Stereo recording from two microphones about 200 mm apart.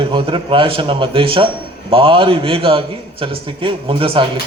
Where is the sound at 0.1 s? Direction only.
25° right (ahead or behind).